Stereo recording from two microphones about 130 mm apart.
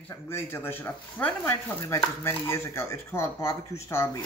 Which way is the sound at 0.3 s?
20° left (ahead or behind).